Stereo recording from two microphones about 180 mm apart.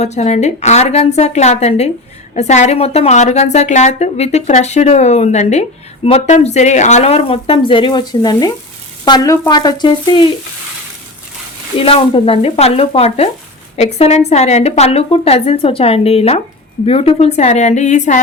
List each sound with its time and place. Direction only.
0.0 s a woman's voice: 40° left (ahead or behind)
11.8 s a woman's voice: 30° left (ahead or behind)